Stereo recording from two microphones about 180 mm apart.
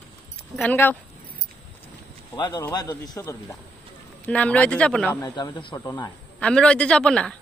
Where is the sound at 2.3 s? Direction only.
20° left (ahead or behind); by 5.1 s 5° left (ahead or behind).